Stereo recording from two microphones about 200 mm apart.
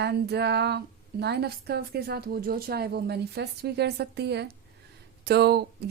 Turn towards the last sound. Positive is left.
turn(degrees=-55)  # may be behind; listen again after turning